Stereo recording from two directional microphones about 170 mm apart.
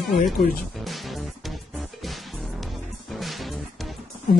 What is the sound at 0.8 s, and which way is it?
Music, centre (ahead or behind).